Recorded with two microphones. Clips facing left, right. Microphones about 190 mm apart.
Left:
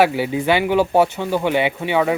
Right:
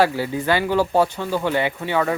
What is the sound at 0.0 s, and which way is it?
Speech, 20° left (ahead or behind).